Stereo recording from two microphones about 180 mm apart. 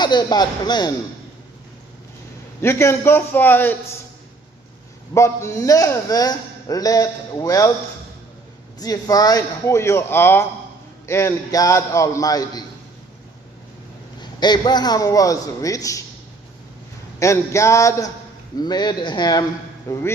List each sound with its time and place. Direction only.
0.0 s a man's voice: 25° left (ahead or behind)
2.6 s a man's voice: 15° left (ahead or behind)
5.1 s a man's voice: 15° left (ahead or behind)
8.8 s a man's voice: 20° left (ahead or behind)
14.2 s a man's voice: 25° left (ahead or behind)
17.2 s a man's voice: 15° left (ahead or behind)